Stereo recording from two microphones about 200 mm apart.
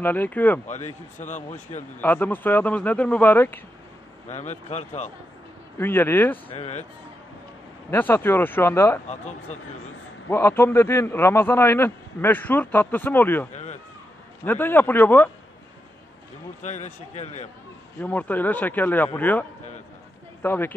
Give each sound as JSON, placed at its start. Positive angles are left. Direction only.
{"t": 0.0, "sound": "a man's voice", "side_deg": 10}
{"t": 0.7, "sound": "a man's voice", "side_deg": 35}
{"t": 2.0, "sound": "a man's voice", "side_deg": 10}
{"t": 4.3, "sound": "a man's voice", "side_deg": 35}
{"t": 5.8, "sound": "a man's voice", "side_deg": 10}
{"t": 6.5, "sound": "a man's voice", "side_deg": 30}
{"t": 7.9, "sound": "a man's voice", "side_deg": 10}
{"t": 9.0, "sound": "a man's voice", "side_deg": 35}
{"t": 10.3, "sound": "a man's voice", "side_deg": 10}
{"t": 13.5, "sound": "a sound", "side_deg": 35}
{"t": 14.4, "sound": "a man's voice", "side_deg": 10}
{"t": 16.6, "sound": "a man's voice", "side_deg": 35}
{"t": 17.9, "sound": "a man's voice", "side_deg": 10}
{"t": 20.4, "sound": "a man's voice", "side_deg": 10}